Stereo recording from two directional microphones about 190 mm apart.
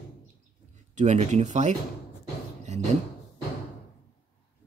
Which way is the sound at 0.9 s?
40° right (ahead or behind).